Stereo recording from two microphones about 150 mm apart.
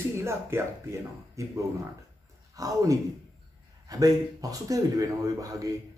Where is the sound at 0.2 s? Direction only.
15° right (ahead or behind).